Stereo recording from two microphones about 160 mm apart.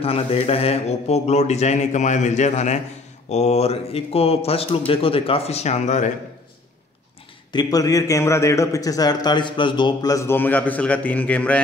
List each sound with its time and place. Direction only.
0.0 s speech: 35° left (ahead or behind)
7.5 s a man's voice: 20° left (ahead or behind)